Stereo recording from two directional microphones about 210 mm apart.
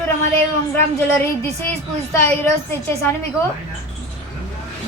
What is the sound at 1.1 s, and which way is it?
Speech, 15° left (ahead or behind).